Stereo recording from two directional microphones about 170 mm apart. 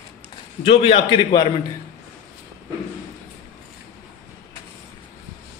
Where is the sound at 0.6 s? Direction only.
35° left (ahead or behind).